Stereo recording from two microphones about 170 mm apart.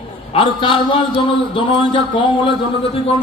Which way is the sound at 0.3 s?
30° left (ahead or behind).